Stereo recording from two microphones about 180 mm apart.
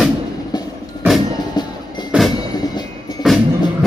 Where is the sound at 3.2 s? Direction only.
Centre (ahead or behind).